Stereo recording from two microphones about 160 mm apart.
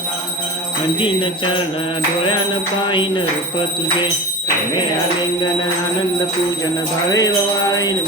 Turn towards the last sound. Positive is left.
turn(degrees=25)  # may be behind; listen again after turning